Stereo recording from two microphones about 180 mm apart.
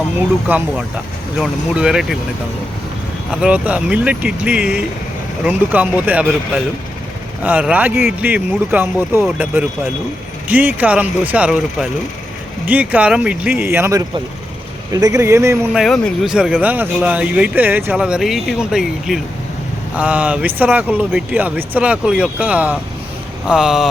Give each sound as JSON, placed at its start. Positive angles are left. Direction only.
{"t": 0.2, "sound": "speech", "side_deg": -10}
{"t": 3.4, "sound": "speech", "side_deg": -5}
{"t": 7.4, "sound": "speech", "side_deg": -10}
{"t": 15.7, "sound": "speech", "side_deg": 0}